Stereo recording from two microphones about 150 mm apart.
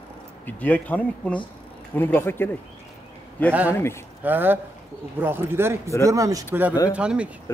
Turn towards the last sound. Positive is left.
turn(degrees=-10)  # may be behind; listen again after turning